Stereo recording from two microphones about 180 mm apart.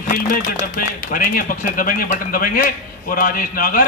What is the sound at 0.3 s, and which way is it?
A man's voice, 50° left (ahead or behind).